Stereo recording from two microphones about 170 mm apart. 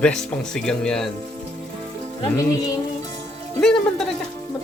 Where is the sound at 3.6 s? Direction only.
5° left (ahead or behind).